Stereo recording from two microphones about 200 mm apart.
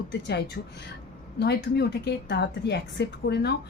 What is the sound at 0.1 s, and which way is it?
A woman's voice, 55° left (ahead or behind).